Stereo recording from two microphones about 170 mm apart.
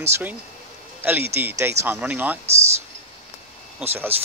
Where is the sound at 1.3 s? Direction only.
15° right (ahead or behind).